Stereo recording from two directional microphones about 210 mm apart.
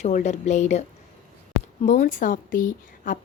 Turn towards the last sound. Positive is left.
turn(degrees=40)  # may be behind; listen again after turning